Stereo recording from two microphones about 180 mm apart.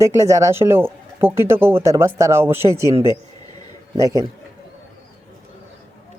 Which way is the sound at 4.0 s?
20° right (ahead or behind).